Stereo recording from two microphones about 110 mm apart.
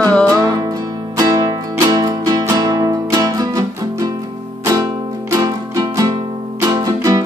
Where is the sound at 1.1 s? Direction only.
30° right (ahead or behind).